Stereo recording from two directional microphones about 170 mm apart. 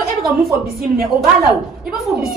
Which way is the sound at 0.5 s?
60° right (ahead or behind).